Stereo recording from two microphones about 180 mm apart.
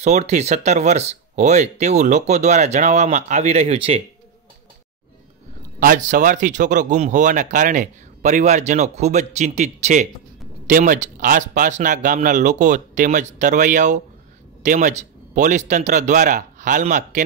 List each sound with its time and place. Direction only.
0.0 s speech: 40° right (ahead or behind)
5.8 s speech: 45° right (ahead or behind)